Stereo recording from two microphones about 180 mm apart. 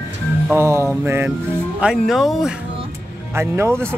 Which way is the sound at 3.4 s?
15° right (ahead or behind).